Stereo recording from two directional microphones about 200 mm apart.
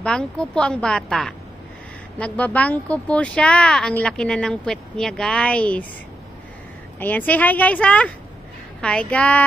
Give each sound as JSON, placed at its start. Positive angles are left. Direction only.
{"t": 0.0, "sound": "speech", "side_deg": 5}
{"t": 7.0, "sound": "a woman's voice", "side_deg": 10}